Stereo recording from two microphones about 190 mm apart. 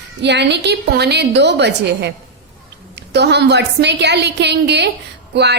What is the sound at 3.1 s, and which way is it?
A woman's voice, 60° right (ahead or behind).